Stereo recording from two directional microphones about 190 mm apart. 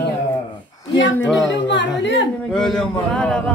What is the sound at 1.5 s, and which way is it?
Chatter, 70° left (ahead or behind).